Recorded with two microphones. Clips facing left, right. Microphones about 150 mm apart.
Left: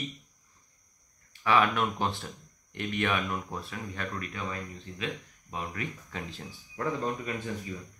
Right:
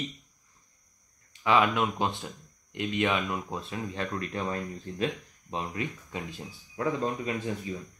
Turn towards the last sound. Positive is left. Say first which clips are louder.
# right 3 dB
turn(degrees=-20)  # may be behind; listen again after turning